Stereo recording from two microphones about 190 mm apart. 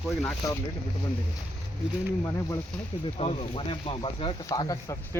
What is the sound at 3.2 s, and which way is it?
Speech, 30° left (ahead or behind).